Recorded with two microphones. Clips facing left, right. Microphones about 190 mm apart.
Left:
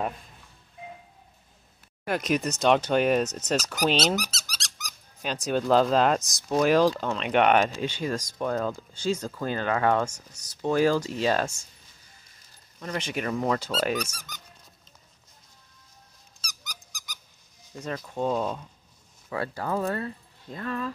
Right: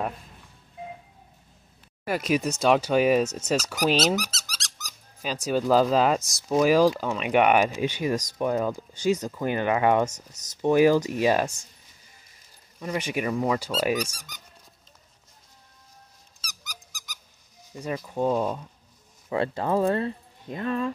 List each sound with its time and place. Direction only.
2.0 s speech: 5° right (ahead or behind)
12.7 s speech: 10° right (ahead or behind)
16.3 s squeak: 5° right (ahead or behind)
17.7 s speech: 10° right (ahead or behind)
19.2 s speech: 25° right (ahead or behind)